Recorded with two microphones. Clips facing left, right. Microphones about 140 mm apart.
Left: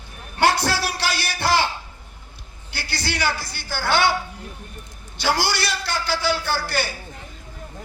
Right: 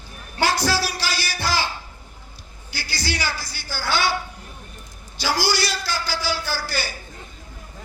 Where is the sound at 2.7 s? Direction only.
60° left (ahead or behind).